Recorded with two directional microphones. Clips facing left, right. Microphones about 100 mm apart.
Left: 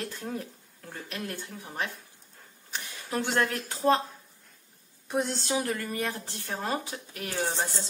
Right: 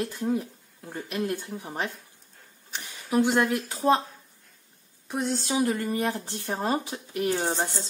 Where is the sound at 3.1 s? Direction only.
10° right (ahead or behind).